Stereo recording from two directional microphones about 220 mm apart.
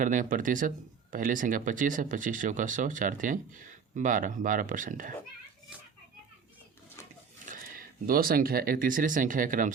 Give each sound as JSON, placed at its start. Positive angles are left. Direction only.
{"t": 0.0, "sound": "speech", "side_deg": -35}
{"t": 7.4, "sound": "speech", "side_deg": -40}